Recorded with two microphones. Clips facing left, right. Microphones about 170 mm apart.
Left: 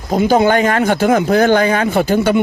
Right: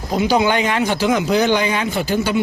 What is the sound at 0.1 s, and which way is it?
Speech, 50° left (ahead or behind).